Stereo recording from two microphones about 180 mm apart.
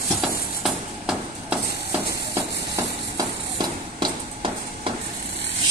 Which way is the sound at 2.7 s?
20° right (ahead or behind).